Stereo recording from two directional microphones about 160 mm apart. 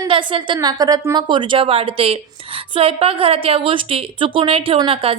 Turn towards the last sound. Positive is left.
turn(degrees=-35)  # may be behind; listen again after turning